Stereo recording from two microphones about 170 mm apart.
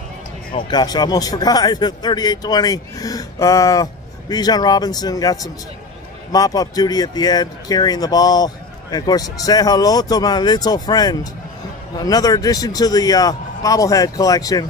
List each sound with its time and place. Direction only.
0.5 s a man's voice: 30° left (ahead or behind)